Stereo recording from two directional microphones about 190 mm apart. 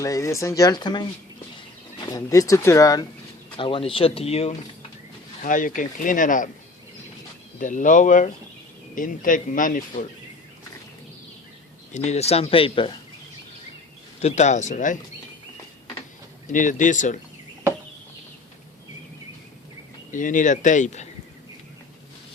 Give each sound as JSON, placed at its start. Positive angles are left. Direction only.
{"t": 0.0, "sound": "speech", "side_deg": 15}
{"t": 2.0, "sound": "speech", "side_deg": 20}
{"t": 5.4, "sound": "speech", "side_deg": 45}
{"t": 7.6, "sound": "speech", "side_deg": 45}
{"t": 11.9, "sound": "speech", "side_deg": 35}
{"t": 14.2, "sound": "speech", "side_deg": 35}
{"t": 16.5, "sound": "speech", "side_deg": 40}
{"t": 20.1, "sound": "speech", "side_deg": 45}